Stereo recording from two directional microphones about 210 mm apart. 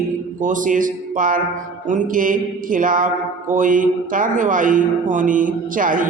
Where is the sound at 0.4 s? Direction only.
40° right (ahead or behind).